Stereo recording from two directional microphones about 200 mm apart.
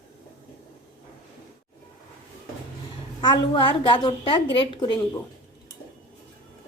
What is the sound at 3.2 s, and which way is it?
A woman's voice, 25° left (ahead or behind).